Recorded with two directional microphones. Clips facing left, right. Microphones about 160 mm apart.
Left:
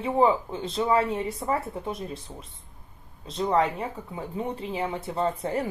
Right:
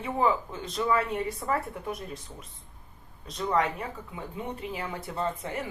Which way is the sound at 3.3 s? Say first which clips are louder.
Left 3 dB; 30° left (ahead or behind).